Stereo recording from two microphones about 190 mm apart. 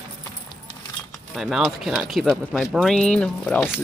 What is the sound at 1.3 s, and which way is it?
Speech, centre (ahead or behind).